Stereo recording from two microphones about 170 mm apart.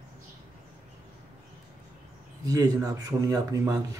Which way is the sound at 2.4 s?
20° right (ahead or behind).